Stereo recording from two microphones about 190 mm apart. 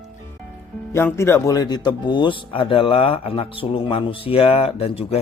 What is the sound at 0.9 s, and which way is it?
Speech, 15° left (ahead or behind).